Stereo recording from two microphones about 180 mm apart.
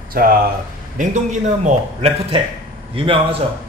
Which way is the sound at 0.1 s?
55° right (ahead or behind).